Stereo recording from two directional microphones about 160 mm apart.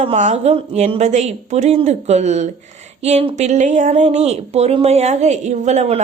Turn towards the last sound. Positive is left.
turn(degrees=-45)  # may be behind; listen again after turning